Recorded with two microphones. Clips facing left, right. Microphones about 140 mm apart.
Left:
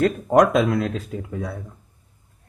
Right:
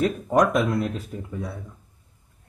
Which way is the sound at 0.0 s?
90° left.